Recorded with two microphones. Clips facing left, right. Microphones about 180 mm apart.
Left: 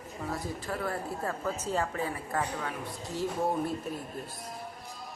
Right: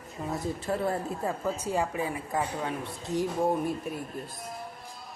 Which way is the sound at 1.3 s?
15° right (ahead or behind).